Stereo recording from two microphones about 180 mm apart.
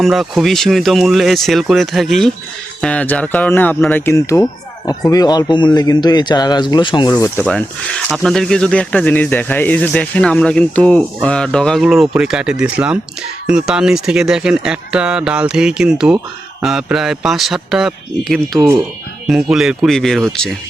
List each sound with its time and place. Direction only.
0.0 s speech: centre (ahead or behind); by 7.3 s 25° left (ahead or behind)
7.3 s speech: 5° left (ahead or behind)